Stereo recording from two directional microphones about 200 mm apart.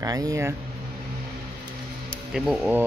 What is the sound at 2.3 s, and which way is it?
Speech, centre (ahead or behind).